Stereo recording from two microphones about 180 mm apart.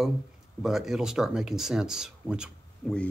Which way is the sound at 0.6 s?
Centre (ahead or behind).